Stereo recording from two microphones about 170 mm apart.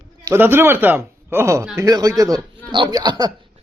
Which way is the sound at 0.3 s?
15° right (ahead or behind).